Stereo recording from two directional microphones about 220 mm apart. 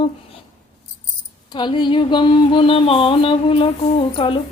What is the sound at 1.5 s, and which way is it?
Speech, 20° left (ahead or behind).